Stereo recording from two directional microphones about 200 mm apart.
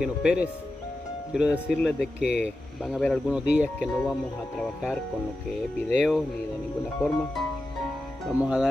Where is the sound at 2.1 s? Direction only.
60° left (ahead or behind).